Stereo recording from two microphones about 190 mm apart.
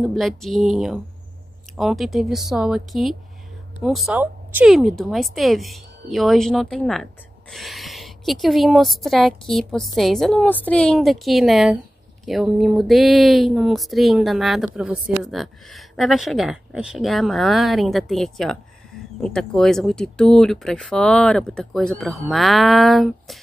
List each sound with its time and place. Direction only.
0.0 s speech: centre (ahead or behind)